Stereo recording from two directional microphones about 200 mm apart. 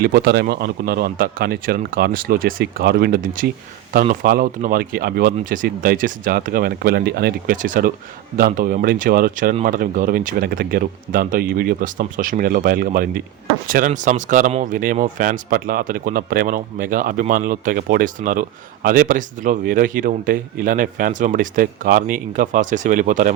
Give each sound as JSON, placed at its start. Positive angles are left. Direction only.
{"t": 0.0, "sound": "speech", "side_deg": -50}